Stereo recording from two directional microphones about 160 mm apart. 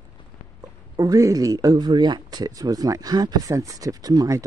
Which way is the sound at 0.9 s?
20° right (ahead or behind).